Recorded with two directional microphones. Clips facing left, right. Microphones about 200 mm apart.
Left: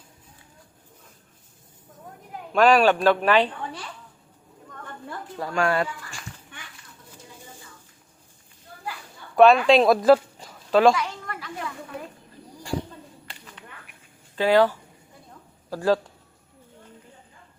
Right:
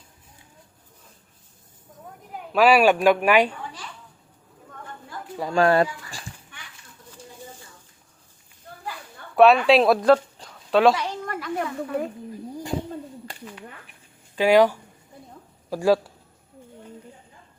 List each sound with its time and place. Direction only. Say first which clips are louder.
2.5 s speech: right 1 dB; 10° right (ahead or behind)
5.5 s speech: right 5 dB; 35° right (ahead or behind)
9.3 s speech: even; centre (ahead or behind)
10.9 s a sound: right 2 dB; 35° right (ahead or behind); by 12.0 s 50° right (ahead or behind)
14.3 s speech: right 2 dB; 15° right (ahead or behind)